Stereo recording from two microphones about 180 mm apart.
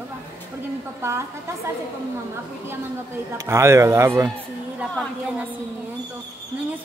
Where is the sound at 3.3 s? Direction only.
15° right (ahead or behind).